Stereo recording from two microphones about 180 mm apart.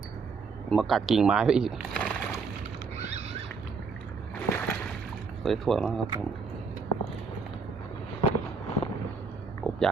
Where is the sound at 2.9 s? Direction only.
35° right (ahead or behind).